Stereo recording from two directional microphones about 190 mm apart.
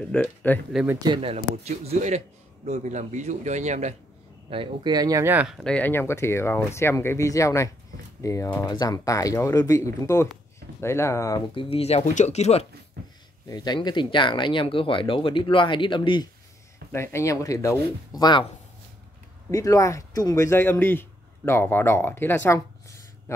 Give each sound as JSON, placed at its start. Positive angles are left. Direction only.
{"t": 0.1, "sound": "speech", "side_deg": 10}
{"t": 1.0, "sound": "a man's voice", "side_deg": -30}
{"t": 4.5, "sound": "speech", "side_deg": -25}
{"t": 5.6, "sound": "speech", "side_deg": 5}
{"t": 13.5, "sound": "speech", "side_deg": 20}
{"t": 16.9, "sound": "speech", "side_deg": 15}
{"t": 19.5, "sound": "speech", "side_deg": 15}